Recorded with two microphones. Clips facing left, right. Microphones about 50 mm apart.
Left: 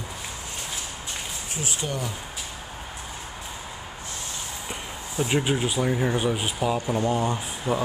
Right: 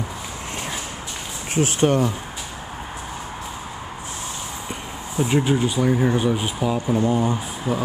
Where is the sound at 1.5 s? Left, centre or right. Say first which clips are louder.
Right 13 dB; right.